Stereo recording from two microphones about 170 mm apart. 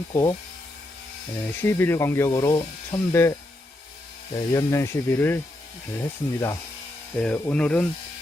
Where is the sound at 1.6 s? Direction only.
15° left (ahead or behind).